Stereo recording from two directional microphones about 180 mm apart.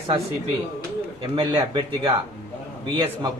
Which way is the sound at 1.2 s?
30° right (ahead or behind).